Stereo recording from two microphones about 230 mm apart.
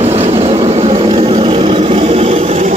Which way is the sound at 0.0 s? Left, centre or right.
Right.